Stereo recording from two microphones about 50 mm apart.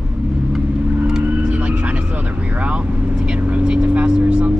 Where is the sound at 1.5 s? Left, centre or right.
Right.